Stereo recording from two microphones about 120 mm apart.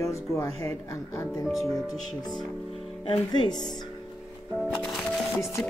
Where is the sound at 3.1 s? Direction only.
35° left (ahead or behind).